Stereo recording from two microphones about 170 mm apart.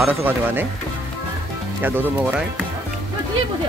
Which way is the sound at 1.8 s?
10° right (ahead or behind).